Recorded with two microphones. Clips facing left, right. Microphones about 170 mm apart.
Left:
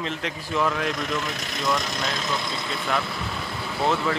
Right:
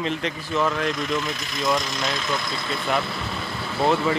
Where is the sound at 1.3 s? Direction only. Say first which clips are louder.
Even; 65° left (ahead or behind).